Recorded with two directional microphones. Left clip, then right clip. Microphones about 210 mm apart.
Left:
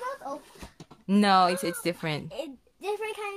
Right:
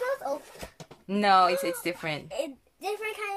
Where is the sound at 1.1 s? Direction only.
40° left (ahead or behind).